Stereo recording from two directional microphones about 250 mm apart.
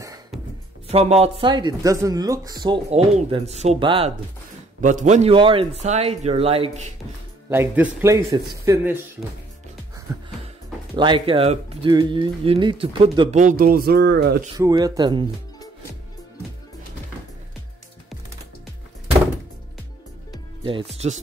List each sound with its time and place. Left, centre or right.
0.8 s speech: right
7.4 s speech: centre
11.0 s speech: centre; by 14.4 s right
14.6 s speech: centre
20.6 s speech: right